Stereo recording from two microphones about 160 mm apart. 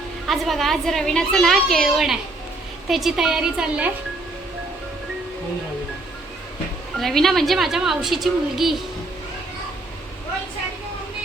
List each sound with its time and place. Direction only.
0.3 s a woman's voice: centre (ahead or behind)
7.0 s a woman's voice: centre (ahead or behind)